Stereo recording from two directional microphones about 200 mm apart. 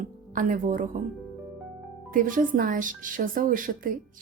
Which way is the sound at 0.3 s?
40° right (ahead or behind).